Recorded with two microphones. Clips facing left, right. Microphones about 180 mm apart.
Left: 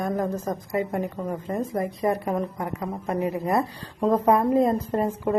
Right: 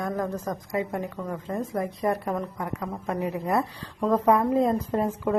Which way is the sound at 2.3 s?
15° left (ahead or behind).